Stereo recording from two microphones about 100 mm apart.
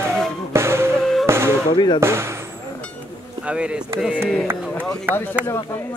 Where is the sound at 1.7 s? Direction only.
45° left (ahead or behind).